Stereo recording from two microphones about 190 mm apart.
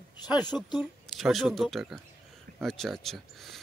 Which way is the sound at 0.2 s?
20° left (ahead or behind).